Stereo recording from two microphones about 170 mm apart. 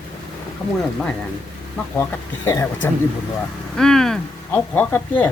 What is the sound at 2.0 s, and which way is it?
Speech, 15° left (ahead or behind).